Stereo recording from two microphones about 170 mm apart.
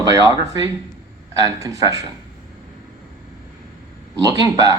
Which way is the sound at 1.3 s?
20° right (ahead or behind).